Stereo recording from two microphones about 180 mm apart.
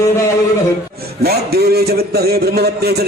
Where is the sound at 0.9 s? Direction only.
60° right (ahead or behind).